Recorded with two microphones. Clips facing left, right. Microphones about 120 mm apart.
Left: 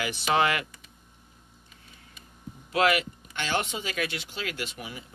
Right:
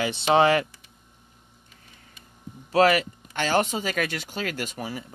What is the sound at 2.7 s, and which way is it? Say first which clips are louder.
Speech: right 5 dB; 40° right (ahead or behind).